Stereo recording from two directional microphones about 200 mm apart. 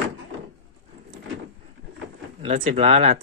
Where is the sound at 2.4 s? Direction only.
30° right (ahead or behind).